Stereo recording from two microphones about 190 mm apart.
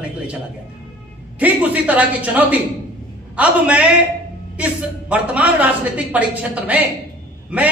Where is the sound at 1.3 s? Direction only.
10° right (ahead or behind).